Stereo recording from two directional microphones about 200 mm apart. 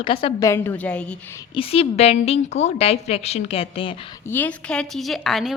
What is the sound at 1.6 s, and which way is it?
A woman's voice, 30° left (ahead or behind).